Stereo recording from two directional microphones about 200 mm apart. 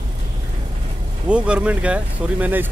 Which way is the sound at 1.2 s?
5° right (ahead or behind).